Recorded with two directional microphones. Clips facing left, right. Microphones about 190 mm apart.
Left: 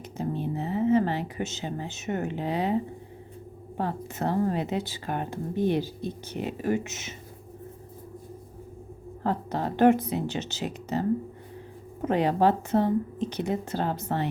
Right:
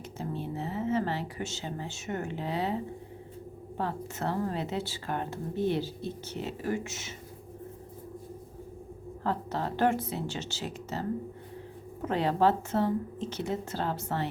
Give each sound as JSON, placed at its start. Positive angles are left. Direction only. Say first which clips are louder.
{"t": 0.2, "sound": "speech", "louder": "left 5 dB", "side_deg": 15}
{"t": 9.2, "sound": "speech", "louder": "left 3 dB", "side_deg": 15}
{"t": 12.0, "sound": "speech", "louder": "left 3 dB", "side_deg": 15}